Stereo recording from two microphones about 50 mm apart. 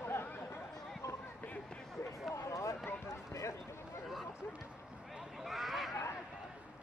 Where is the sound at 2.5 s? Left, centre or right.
Left.